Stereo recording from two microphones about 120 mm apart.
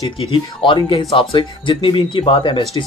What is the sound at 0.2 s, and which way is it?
Speech, 45° left (ahead or behind).